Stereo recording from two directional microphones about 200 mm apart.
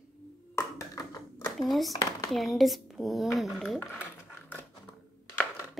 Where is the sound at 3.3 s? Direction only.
Centre (ahead or behind).